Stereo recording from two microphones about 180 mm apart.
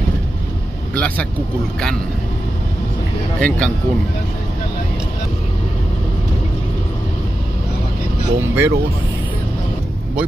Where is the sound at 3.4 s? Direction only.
5° left (ahead or behind).